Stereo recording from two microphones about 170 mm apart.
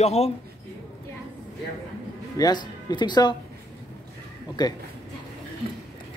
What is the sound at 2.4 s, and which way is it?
Speech, 20° left (ahead or behind).